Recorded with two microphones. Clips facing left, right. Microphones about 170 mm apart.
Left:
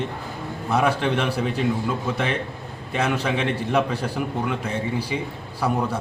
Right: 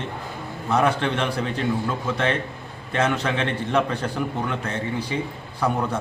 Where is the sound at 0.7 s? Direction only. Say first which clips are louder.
Even; 10° left (ahead or behind).